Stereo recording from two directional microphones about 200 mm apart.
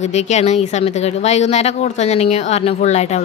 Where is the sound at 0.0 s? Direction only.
35° left (ahead or behind).